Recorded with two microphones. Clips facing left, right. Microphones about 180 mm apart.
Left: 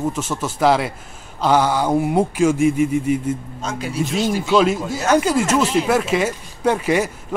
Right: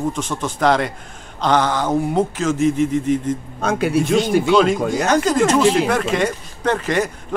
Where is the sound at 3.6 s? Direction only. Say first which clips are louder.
Right 7 dB; 60° right (ahead or behind).